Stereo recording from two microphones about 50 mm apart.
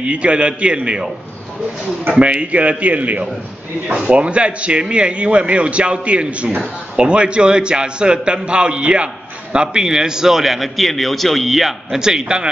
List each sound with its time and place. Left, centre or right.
0.0 s a man's voice: right